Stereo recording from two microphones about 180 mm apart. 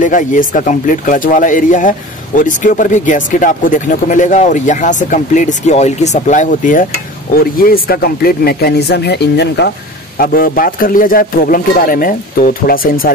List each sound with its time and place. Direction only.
0.0 s speech: 45° left (ahead or behind); by 9.7 s 70° left (ahead or behind)
10.1 s speech: 55° left (ahead or behind)